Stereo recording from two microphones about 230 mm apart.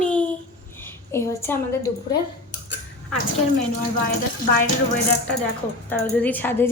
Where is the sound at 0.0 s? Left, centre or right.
Centre.